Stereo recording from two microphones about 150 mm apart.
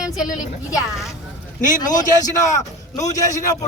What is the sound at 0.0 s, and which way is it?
Speech, 5° right (ahead or behind).